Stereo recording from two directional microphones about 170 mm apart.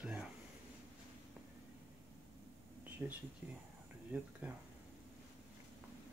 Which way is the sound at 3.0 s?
10° right (ahead or behind).